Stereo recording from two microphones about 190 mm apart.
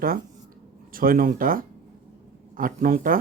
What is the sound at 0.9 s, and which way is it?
Speech, 50° right (ahead or behind).